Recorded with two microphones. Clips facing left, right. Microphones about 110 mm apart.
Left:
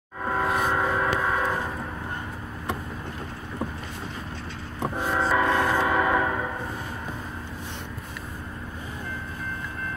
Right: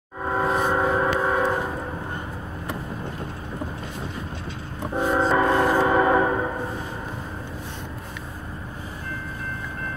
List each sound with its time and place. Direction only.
0.2 s train: 15° right (ahead or behind)
0.7 s a sound: 20° right (ahead or behind)
4.9 s train: 20° right (ahead or behind)